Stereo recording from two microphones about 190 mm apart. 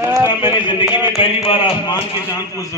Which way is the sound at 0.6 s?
25° left (ahead or behind).